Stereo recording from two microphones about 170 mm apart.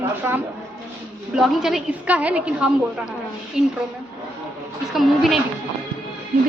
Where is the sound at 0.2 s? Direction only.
10° right (ahead or behind).